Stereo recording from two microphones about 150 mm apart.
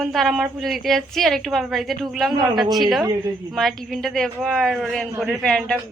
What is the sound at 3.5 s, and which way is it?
A woman's voice, centre (ahead or behind).